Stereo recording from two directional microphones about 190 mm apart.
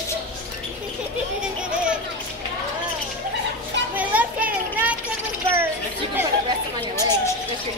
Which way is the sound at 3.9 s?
10° right (ahead or behind).